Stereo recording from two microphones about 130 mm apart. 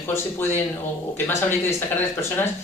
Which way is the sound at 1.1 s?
15° left (ahead or behind).